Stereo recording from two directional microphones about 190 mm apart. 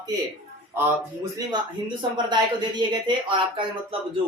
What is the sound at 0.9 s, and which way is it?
A man's voice, 15° right (ahead or behind).